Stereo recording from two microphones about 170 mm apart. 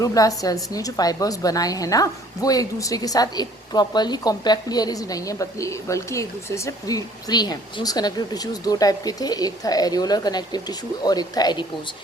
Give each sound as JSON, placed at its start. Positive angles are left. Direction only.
{"t": 0.0, "sound": "a woman's voice", "side_deg": 20}